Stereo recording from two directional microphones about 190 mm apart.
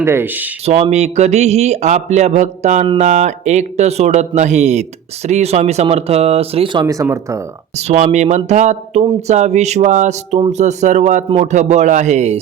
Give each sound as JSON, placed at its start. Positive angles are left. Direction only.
{"t": 0.0, "sound": "speech", "side_deg": -10}
{"t": 0.6, "sound": "speech", "side_deg": -35}
{"t": 6.8, "sound": "speech", "side_deg": -15}
{"t": 7.8, "sound": "speech", "side_deg": -35}